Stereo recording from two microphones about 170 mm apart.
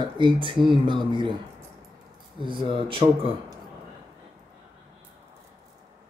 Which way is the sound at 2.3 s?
30° right (ahead or behind).